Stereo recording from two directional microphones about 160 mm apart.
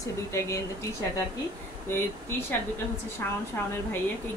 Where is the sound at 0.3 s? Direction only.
20° left (ahead or behind).